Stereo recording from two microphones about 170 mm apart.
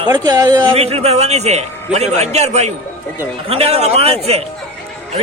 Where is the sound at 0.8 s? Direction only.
35° right (ahead or behind).